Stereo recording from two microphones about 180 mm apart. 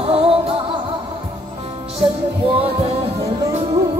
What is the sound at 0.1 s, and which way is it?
Music, 30° right (ahead or behind).